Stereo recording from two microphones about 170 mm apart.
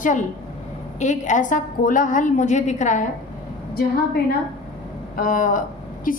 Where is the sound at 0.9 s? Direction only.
45° left (ahead or behind).